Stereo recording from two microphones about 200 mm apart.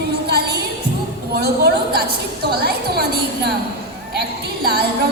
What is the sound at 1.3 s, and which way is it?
A woman's voice, 50° right (ahead or behind).